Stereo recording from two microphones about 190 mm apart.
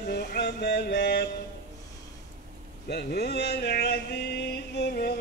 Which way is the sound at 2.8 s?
55° left (ahead or behind).